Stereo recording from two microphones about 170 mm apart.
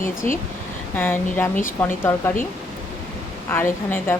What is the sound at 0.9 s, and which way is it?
Speech, 10° left (ahead or behind).